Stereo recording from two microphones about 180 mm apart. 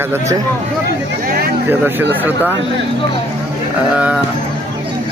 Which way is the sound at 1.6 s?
10° right (ahead or behind).